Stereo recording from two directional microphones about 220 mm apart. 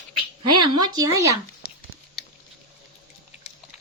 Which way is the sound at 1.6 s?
45° left (ahead or behind).